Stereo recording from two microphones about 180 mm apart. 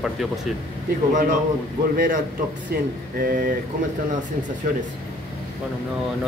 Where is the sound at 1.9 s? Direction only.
50° right (ahead or behind).